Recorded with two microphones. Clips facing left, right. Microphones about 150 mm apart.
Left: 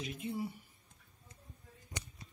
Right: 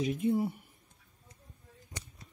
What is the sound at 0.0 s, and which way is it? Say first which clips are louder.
Speech: right 10 dB; 50° right (ahead or behind).